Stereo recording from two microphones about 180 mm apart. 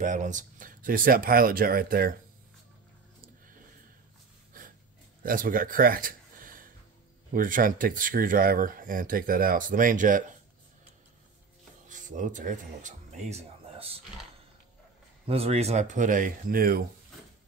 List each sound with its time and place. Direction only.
0.0 s speech: 45° right (ahead or behind)
5.2 s speech: 50° right (ahead or behind)
11.9 s a sound: 45° right (ahead or behind)
15.2 s speech: 35° right (ahead or behind); by 16.8 s 55° right (ahead or behind)